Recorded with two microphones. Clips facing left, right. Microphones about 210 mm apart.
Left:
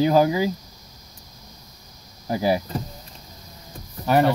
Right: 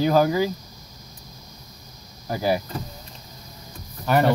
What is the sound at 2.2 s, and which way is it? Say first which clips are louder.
Speech: left 2 dB; 15° left (ahead or behind).